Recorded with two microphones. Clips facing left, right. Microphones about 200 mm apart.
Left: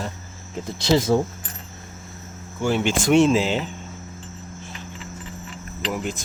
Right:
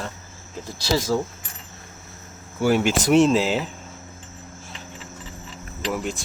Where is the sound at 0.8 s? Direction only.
25° left (ahead or behind).